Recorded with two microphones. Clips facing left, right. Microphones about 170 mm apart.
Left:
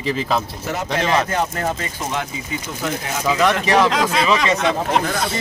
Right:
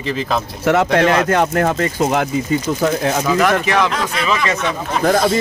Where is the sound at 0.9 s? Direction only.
75° right (ahead or behind); by 2.2 s 55° right (ahead or behind).